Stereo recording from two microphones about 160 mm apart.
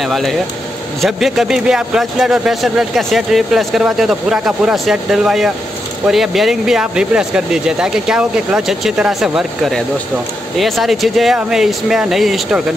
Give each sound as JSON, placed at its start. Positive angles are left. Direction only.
{"t": 0.0, "sound": "speech", "side_deg": 0}